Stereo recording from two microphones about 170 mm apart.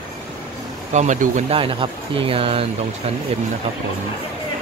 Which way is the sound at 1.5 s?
30° right (ahead or behind).